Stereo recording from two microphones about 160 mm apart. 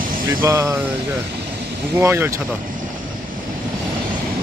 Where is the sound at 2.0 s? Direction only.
15° right (ahead or behind).